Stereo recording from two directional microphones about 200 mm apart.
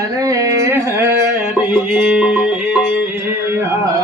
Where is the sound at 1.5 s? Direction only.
5° right (ahead or behind).